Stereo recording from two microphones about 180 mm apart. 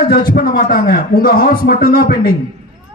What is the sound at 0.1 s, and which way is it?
A man's voice, 55° left (ahead or behind).